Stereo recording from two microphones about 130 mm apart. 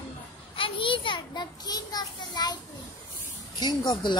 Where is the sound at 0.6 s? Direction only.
40° left (ahead or behind).